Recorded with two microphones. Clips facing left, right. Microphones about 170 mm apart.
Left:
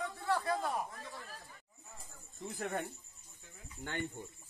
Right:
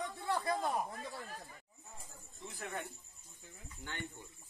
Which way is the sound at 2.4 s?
45° left (ahead or behind).